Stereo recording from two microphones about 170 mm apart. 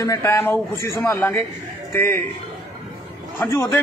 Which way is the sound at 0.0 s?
15° left (ahead or behind).